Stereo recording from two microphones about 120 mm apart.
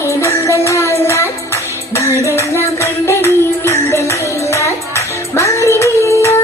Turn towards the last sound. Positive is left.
turn(degrees=25)  # may be behind; listen again after turning